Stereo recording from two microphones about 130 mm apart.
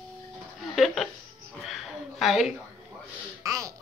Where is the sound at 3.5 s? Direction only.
25° right (ahead or behind).